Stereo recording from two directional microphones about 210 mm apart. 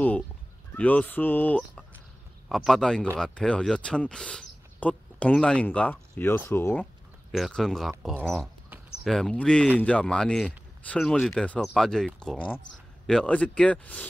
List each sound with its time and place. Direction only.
0.7 s speech: 10° left (ahead or behind)